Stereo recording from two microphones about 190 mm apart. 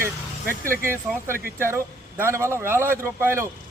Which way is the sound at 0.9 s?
10° right (ahead or behind).